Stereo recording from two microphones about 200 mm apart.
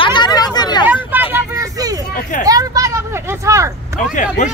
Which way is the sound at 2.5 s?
15° right (ahead or behind).